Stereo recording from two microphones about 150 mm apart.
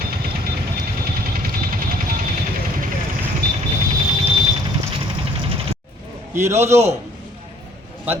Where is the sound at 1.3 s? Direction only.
75° right (ahead or behind).